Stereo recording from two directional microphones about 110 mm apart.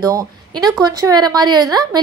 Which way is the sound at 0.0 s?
35° right (ahead or behind).